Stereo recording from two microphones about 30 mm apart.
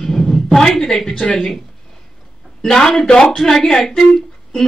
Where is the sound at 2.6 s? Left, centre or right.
Centre.